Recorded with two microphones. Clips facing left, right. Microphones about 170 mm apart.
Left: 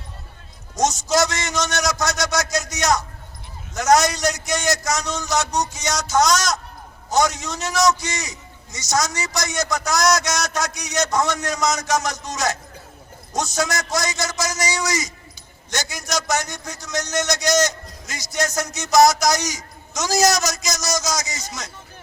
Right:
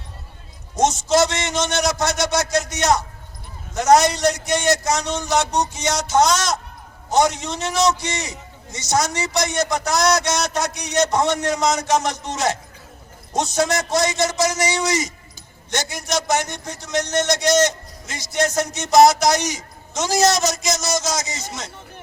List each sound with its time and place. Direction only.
0.8 s a man's voice: 25° right (ahead or behind)